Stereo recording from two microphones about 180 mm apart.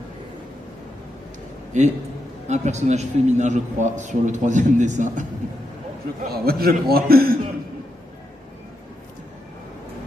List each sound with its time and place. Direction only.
1.7 s a man's voice: 40° right (ahead or behind)
6.2 s a man's voice: 60° right (ahead or behind)